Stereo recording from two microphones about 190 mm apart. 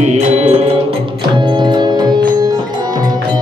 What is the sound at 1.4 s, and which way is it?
Music, 25° right (ahead or behind).